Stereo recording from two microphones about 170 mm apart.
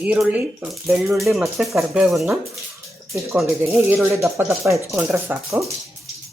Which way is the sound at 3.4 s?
15° right (ahead or behind).